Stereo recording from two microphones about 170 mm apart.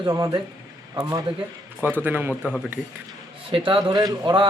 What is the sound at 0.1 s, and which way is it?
Speech, 20° right (ahead or behind).